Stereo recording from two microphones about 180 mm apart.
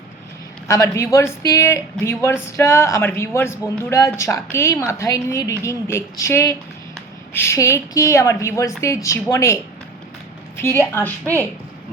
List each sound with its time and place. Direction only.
0.7 s speech: 15° left (ahead or behind)
10.6 s speech: 15° left (ahead or behind)